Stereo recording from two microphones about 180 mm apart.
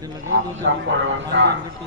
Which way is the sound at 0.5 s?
90° right.